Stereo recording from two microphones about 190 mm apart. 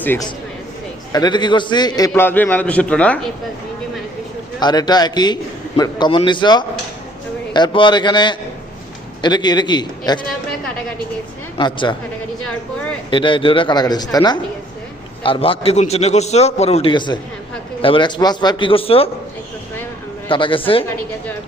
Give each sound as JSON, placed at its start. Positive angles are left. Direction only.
{"t": 0.0, "sound": "speech", "side_deg": 10}
{"t": 1.1, "sound": "a man's voice", "side_deg": 20}
{"t": 4.6, "sound": "a man's voice", "side_deg": 20}
{"t": 11.5, "sound": "a man's voice", "side_deg": 25}
{"t": 13.1, "sound": "a man's voice", "side_deg": 25}
{"t": 20.2, "sound": "a man's voice", "side_deg": 25}